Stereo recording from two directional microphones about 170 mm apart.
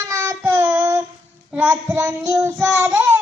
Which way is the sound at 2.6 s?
5° right (ahead or behind).